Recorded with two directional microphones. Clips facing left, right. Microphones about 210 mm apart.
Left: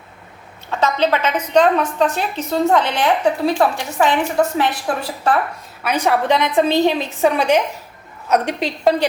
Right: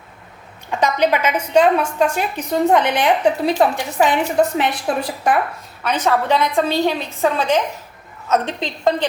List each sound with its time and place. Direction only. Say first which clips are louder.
0.7 s a woman's voice: even; 15° right (ahead or behind)
5.8 s a woman's voice: left 1 dB; 10° left (ahead or behind)